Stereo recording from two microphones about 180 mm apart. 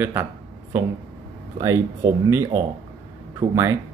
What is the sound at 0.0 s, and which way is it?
Speech, 15° right (ahead or behind).